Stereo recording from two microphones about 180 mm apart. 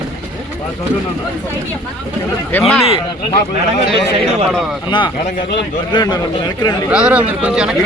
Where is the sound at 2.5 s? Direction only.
10° left (ahead or behind).